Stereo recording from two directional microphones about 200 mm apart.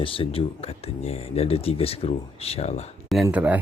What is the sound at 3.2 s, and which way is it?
Speech, 10° right (ahead or behind).